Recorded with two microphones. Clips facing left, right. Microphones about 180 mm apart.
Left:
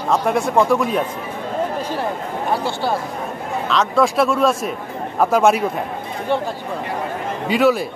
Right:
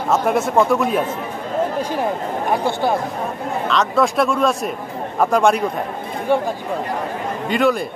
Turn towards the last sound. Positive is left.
turn(degrees=5)  # may be behind; listen again after turning